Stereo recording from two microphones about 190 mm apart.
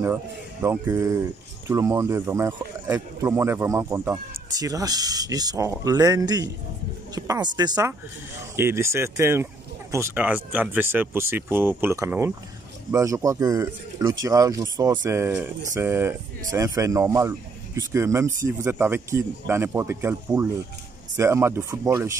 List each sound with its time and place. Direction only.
0.0 s speech: 10° right (ahead or behind)